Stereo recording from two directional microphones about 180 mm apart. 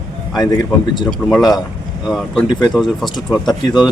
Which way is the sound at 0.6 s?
25° left (ahead or behind).